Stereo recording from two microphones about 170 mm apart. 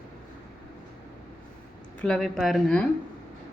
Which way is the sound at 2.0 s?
5° left (ahead or behind).